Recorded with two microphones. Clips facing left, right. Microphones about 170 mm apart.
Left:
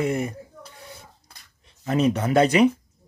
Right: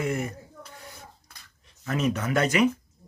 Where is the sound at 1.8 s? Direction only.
30° left (ahead or behind).